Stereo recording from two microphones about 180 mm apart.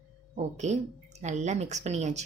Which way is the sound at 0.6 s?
40° right (ahead or behind).